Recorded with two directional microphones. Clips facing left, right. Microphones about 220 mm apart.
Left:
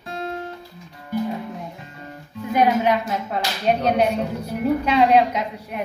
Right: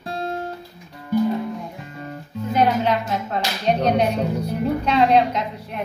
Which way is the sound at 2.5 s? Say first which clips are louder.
Left 1 dB; 15° left (ahead or behind).